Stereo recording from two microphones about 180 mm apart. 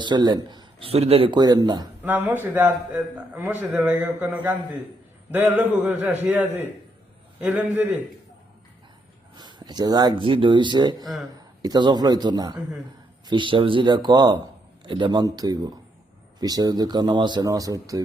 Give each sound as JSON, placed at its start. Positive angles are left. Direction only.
{"t": 0.0, "sound": "a man's voice", "side_deg": -25}
{"t": 2.0, "sound": "a man's voice", "side_deg": -10}
{"t": 9.3, "sound": "a man's voice", "side_deg": -25}